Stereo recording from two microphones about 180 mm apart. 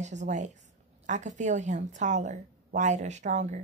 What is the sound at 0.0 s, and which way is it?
Speech, 40° right (ahead or behind).